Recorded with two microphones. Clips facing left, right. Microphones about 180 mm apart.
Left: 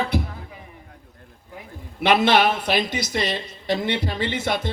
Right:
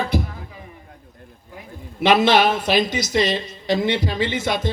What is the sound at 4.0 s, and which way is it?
Speech, 60° left (ahead or behind).